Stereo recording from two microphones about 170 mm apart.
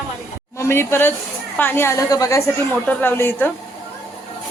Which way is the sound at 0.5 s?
15° left (ahead or behind).